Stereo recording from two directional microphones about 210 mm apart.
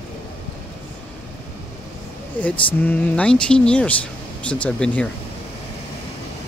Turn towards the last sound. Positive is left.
turn(degrees=5)  # may be behind; listen again after turning